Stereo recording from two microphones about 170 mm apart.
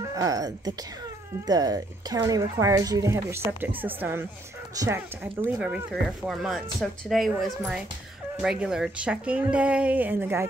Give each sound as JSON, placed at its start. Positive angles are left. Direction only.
{"t": 0.0, "sound": "speech", "side_deg": -20}